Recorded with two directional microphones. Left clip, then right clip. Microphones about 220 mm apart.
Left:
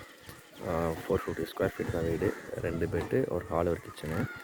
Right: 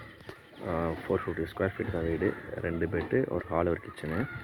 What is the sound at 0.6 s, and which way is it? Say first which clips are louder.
Speech: even; 15° left (ahead or behind).